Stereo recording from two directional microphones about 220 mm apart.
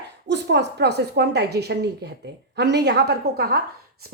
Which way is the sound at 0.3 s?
50° right (ahead or behind).